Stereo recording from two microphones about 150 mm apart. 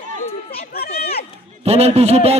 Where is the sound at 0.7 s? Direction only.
90° left.